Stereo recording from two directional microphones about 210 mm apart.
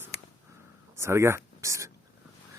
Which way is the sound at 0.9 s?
10° right (ahead or behind).